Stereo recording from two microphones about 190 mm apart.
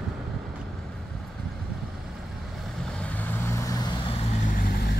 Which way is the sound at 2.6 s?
5° left (ahead or behind).